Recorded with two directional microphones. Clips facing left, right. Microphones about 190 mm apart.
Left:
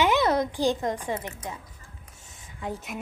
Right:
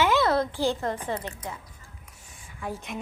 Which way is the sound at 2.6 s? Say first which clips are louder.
Left 1 dB; 20° left (ahead or behind).